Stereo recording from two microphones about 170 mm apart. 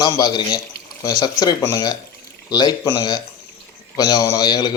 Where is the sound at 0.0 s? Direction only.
25° left (ahead or behind).